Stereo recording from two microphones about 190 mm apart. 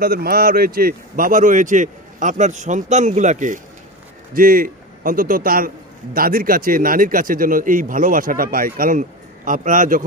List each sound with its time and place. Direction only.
0.0 s a man's voice: 55° right (ahead or behind)